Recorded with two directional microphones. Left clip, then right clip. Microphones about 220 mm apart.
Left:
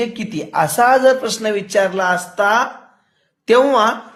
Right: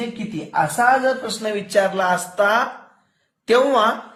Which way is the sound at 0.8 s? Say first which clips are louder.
Left 3 dB; 55° left (ahead or behind).